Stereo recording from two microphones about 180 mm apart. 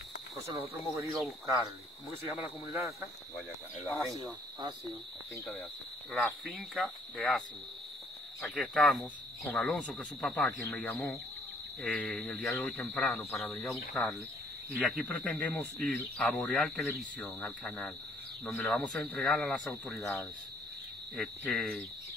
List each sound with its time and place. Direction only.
0.5 s speech: 15° right (ahead or behind)
2.2 s speech: 15° right (ahead or behind)
4.2 s cricket: 25° right (ahead or behind)
6.4 s speech: centre (ahead or behind)
21.2 s speech: centre (ahead or behind)